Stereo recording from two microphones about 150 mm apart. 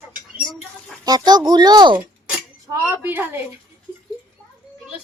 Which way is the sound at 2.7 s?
15° right (ahead or behind).